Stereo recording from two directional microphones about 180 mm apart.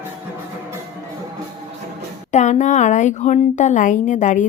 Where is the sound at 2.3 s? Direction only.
40° left (ahead or behind).